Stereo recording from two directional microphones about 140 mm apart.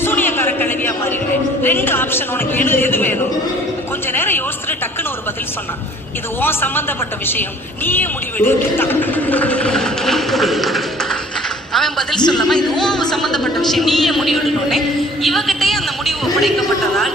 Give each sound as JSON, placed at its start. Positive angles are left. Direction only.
{"t": 0.0, "sound": "a sound", "side_deg": 15}
{"t": 1.6, "sound": "a man's voice", "side_deg": 15}
{"t": 6.4, "sound": "a man's voice", "side_deg": 15}
{"t": 7.9, "sound": "speech", "side_deg": 15}
{"t": 11.7, "sound": "a sound", "side_deg": 5}
{"t": 13.7, "sound": "a man's voice", "side_deg": 0}